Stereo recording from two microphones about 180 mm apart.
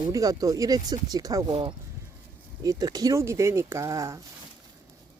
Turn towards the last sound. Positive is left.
turn(degrees=-15)  # may be behind; listen again after turning